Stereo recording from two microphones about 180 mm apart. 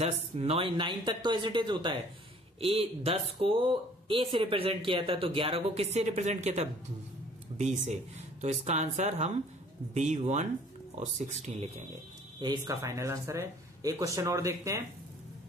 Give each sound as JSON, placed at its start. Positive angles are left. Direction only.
{"t": 0.0, "sound": "speech", "side_deg": -35}
{"t": 12.4, "sound": "speech", "side_deg": -20}